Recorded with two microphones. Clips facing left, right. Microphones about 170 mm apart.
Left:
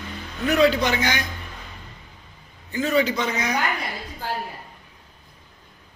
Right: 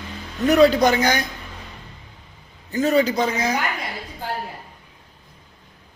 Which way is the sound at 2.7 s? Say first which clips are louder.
Right 3 dB; 40° right (ahead or behind).